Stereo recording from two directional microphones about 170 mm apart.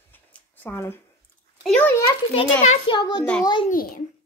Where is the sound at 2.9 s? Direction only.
25° left (ahead or behind).